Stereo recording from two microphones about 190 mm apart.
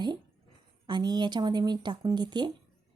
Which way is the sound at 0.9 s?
20° right (ahead or behind).